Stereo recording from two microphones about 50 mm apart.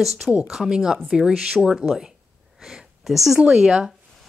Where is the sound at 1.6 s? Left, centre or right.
Centre.